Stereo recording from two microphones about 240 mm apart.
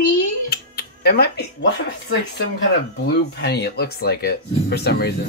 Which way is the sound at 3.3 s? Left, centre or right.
Left.